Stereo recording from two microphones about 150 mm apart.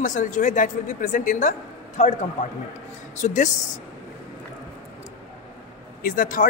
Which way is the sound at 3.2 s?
50° left (ahead or behind).